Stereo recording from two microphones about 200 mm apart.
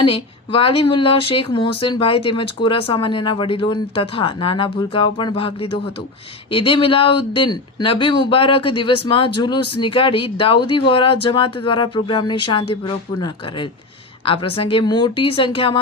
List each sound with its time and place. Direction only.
0.0 s speech: 25° left (ahead or behind)